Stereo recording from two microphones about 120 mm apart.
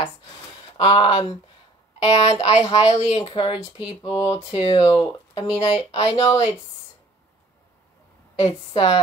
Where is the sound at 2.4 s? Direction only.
65° left (ahead or behind).